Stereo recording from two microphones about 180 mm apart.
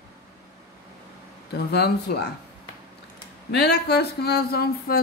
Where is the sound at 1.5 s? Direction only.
65° left (ahead or behind).